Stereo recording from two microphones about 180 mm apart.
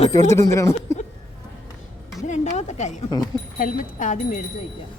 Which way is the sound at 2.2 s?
40° left (ahead or behind).